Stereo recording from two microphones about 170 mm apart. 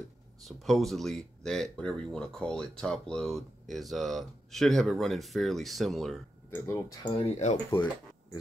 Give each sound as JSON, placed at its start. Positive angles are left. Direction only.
{"t": 0.4, "sound": "speech", "side_deg": 0}
{"t": 6.5, "sound": "speech", "side_deg": 15}
{"t": 7.2, "sound": "speech", "side_deg": 40}